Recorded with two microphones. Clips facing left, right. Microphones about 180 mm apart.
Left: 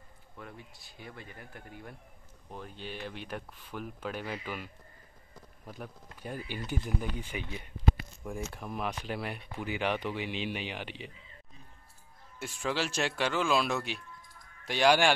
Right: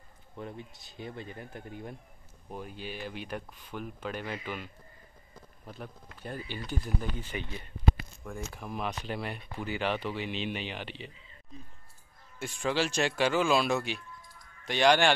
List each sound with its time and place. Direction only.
0.4 s speech: 25° right (ahead or behind)
2.5 s speech: 10° right (ahead or behind); by 4.6 s 5° left (ahead or behind)
5.7 s speech: 10° left (ahead or behind)
12.4 s speech: 5° left (ahead or behind)